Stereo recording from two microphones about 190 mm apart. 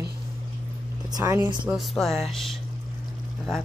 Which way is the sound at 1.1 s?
15° right (ahead or behind).